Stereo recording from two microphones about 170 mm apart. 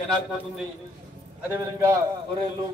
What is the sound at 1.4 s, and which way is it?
Speech, 15° right (ahead or behind).